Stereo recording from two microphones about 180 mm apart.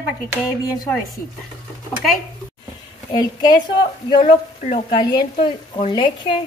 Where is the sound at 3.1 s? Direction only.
25° left (ahead or behind).